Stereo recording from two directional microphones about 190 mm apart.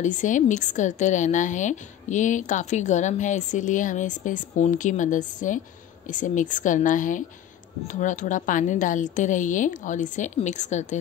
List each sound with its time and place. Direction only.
0.0 s a woman's voice: 40° left (ahead or behind)